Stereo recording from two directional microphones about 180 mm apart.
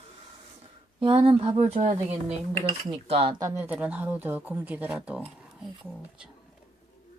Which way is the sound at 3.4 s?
15° right (ahead or behind).